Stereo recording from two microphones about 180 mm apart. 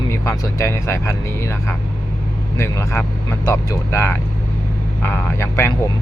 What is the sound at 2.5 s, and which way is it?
Speech, 15° left (ahead or behind).